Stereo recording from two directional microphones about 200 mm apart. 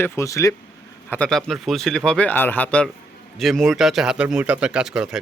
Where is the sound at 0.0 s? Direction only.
15° left (ahead or behind).